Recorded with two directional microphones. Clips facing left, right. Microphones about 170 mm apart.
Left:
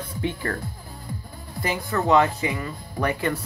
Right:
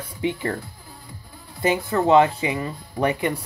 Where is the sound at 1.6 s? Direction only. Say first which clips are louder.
Right 4 dB; 25° right (ahead or behind).